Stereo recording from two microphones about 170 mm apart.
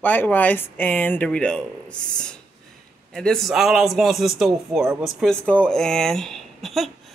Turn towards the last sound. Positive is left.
turn(degrees=0)  # may be behind; listen again after turning